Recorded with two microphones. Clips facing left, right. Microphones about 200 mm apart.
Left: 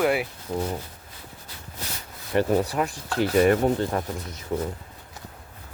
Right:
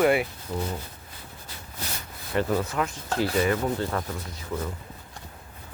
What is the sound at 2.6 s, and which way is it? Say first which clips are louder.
Speech: left 3 dB; 35° left (ahead or behind).